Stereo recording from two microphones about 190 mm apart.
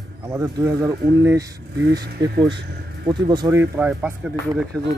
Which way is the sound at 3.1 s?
20° right (ahead or behind).